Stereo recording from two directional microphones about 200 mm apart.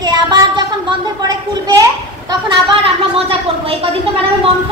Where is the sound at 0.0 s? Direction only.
20° right (ahead or behind).